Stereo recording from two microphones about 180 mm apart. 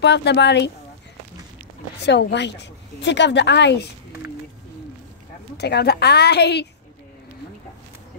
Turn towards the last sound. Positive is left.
turn(degrees=70)  # may be behind; listen again after turning